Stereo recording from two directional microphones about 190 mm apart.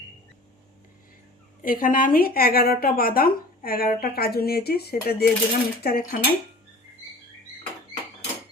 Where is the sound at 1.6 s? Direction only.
45° left (ahead or behind).